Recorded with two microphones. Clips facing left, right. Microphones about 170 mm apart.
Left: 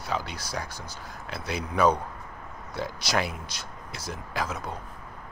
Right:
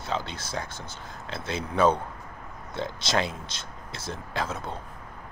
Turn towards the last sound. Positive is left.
turn(degrees=-25)  # may be behind; listen again after turning